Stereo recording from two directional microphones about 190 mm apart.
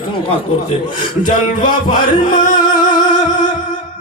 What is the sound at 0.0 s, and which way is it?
Speech, 25° left (ahead or behind).